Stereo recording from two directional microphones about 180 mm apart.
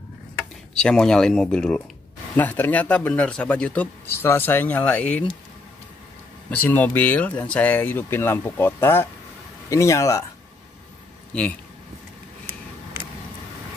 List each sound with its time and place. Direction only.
0.4 s speech: 5° left (ahead or behind)
6.5 s speech: 10° left (ahead or behind)